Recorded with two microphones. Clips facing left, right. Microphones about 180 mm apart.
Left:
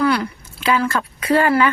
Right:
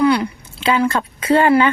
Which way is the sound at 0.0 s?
20° right (ahead or behind).